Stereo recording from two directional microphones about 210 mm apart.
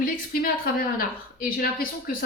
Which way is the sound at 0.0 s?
45° left (ahead or behind).